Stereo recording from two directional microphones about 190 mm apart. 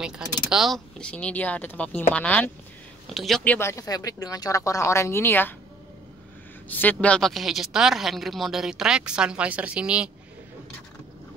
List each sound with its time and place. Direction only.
0.0 s speech: centre (ahead or behind)
3.5 s speech: 15° left (ahead or behind)
6.7 s speech: 10° left (ahead or behind)